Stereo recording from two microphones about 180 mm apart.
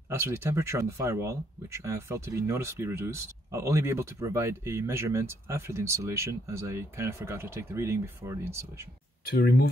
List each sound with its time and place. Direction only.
0.1 s speech: 15° right (ahead or behind)
9.2 s speech: 65° left (ahead or behind)